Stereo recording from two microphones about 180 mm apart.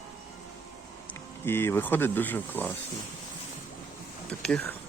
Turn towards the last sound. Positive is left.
turn(degrees=5)  # may be behind; listen again after turning